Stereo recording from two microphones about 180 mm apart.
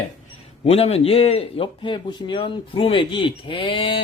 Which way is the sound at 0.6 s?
35° left (ahead or behind).